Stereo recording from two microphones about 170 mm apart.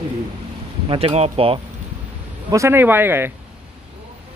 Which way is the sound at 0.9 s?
35° right (ahead or behind).